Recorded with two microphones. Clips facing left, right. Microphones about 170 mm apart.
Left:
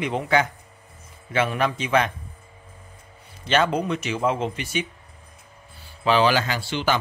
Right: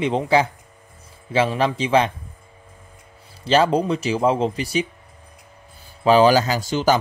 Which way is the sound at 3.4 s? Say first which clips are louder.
Right 4 dB; 30° right (ahead or behind).